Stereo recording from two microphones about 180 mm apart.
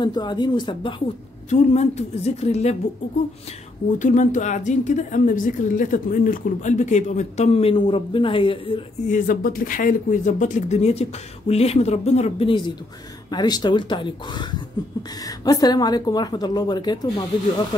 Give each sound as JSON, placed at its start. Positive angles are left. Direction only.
{"t": 0.0, "sound": "a woman's voice", "side_deg": 25}
{"t": 1.5, "sound": "a woman's voice", "side_deg": 35}
{"t": 4.0, "sound": "a woman's voice", "side_deg": 45}
{"t": 9.1, "sound": "a woman's voice", "side_deg": 50}